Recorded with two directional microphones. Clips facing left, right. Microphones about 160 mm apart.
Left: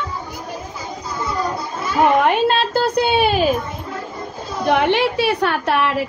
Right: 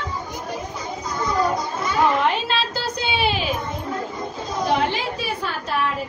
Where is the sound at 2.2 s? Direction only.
55° left (ahead or behind).